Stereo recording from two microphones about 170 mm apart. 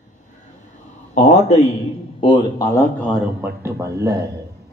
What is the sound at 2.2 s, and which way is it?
Speech, 30° left (ahead or behind).